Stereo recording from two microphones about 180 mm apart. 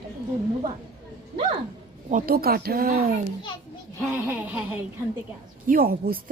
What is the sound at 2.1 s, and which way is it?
Speech, 50° right (ahead or behind).